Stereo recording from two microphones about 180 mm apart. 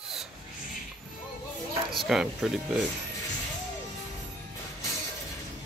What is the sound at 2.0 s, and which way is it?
Speech, centre (ahead or behind).